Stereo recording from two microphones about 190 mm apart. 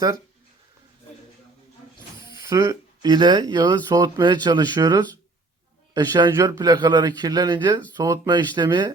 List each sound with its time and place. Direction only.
2.2 s speech: 15° right (ahead or behind)